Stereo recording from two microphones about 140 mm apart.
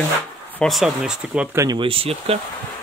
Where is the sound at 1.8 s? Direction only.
40° right (ahead or behind).